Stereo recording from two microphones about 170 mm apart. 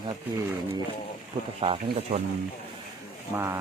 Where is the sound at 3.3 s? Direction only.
15° right (ahead or behind).